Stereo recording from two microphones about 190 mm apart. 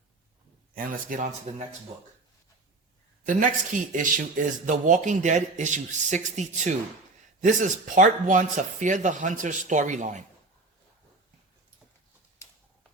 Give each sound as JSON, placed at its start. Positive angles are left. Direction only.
{"t": 0.7, "sound": "speech", "side_deg": -50}
{"t": 3.2, "sound": "speech", "side_deg": -45}